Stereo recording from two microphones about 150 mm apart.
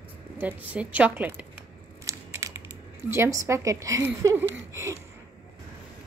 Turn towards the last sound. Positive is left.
turn(degrees=-20)  # may be behind; listen again after turning